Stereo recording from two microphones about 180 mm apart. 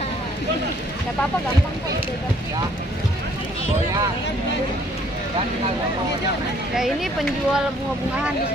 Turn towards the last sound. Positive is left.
turn(degrees=0)  # may be behind; listen again after turning